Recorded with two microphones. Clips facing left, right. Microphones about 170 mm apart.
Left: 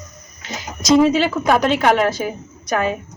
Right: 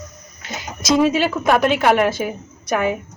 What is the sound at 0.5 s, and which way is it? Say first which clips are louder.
Speech: left 3 dB; centre (ahead or behind).